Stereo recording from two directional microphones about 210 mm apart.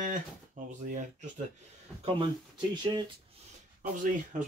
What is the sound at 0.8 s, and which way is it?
Speech, 35° right (ahead or behind).